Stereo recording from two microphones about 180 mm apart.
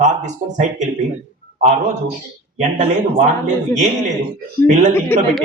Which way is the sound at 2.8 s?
35° right (ahead or behind).